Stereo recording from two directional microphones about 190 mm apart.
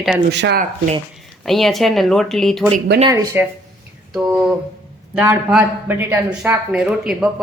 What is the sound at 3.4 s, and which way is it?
Speech, 10° right (ahead or behind).